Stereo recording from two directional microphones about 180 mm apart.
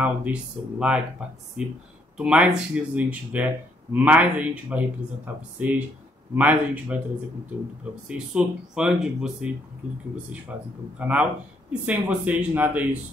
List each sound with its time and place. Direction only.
0.0 s speech: 5° right (ahead or behind)
2.1 s speech: 5° right (ahead or behind)
8.1 s speech: 5° right (ahead or behind)
10.5 s speech: 10° right (ahead or behind)